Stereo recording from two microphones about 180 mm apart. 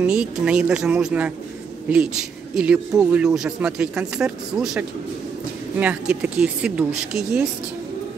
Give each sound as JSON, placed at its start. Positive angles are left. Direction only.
{"t": 0.0, "sound": "speech", "side_deg": -5}